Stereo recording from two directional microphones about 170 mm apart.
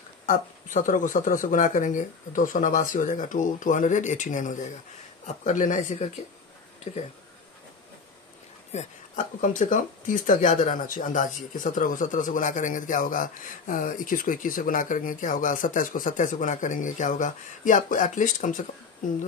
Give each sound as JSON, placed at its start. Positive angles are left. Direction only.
{"t": 0.3, "sound": "speech", "side_deg": 50}
{"t": 6.9, "sound": "speech", "side_deg": 35}
{"t": 8.7, "sound": "speech", "side_deg": 50}